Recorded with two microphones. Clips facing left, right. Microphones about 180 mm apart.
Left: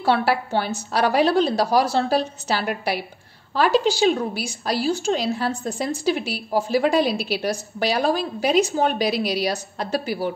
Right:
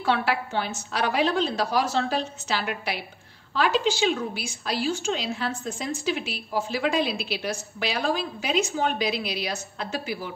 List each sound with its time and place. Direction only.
0.0 s a woman's voice: 40° left (ahead or behind)